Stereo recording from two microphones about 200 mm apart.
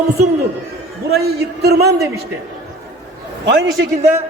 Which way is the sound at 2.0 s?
15° right (ahead or behind).